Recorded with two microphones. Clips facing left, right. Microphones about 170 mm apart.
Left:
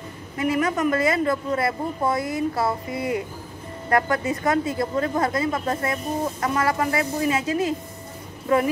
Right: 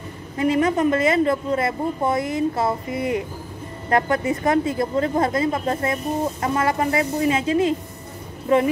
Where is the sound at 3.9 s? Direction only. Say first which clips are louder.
Right 2 dB; 25° right (ahead or behind).